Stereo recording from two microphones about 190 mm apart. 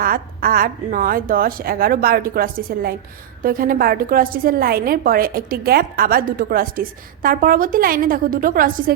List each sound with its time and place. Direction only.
0.0 s a woman's voice: 50° right (ahead or behind)